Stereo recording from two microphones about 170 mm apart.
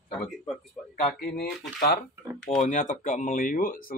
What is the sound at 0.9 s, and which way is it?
Speech, 60° left (ahead or behind).